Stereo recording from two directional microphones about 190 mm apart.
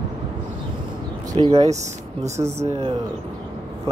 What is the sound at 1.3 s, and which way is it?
Speech, 25° right (ahead or behind).